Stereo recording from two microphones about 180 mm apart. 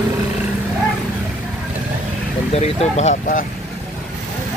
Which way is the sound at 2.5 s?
35° left (ahead or behind).